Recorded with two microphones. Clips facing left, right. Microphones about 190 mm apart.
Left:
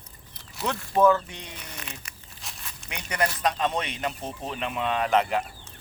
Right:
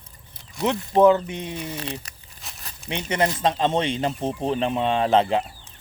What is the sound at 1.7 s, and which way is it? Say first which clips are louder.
Speech: right 10 dB; 35° right (ahead or behind).